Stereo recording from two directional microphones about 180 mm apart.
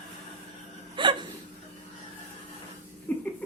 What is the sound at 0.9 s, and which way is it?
Hiccup, 25° right (ahead or behind).